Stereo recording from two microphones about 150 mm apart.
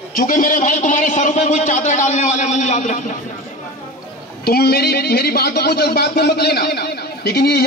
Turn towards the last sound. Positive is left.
turn(degrees=90)